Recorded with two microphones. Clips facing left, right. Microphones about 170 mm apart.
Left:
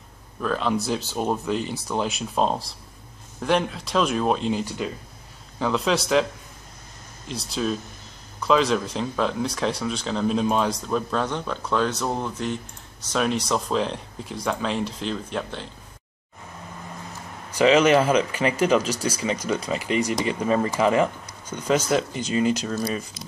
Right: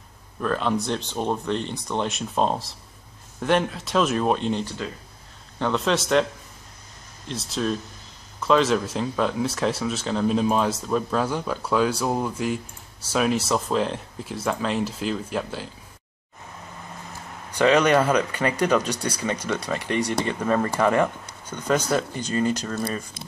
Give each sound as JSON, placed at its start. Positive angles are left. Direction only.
{"t": 0.4, "sound": "speech", "side_deg": 0}
{"t": 7.2, "sound": "speech", "side_deg": 0}
{"t": 17.6, "sound": "speech", "side_deg": 10}